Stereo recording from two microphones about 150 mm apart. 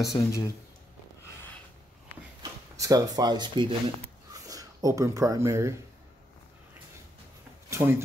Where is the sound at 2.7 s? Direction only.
25° right (ahead or behind).